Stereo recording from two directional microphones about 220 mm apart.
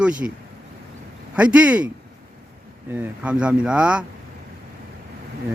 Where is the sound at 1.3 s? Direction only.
5° right (ahead or behind).